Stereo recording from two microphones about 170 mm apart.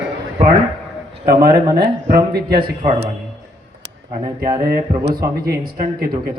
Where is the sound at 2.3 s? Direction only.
65° right (ahead or behind).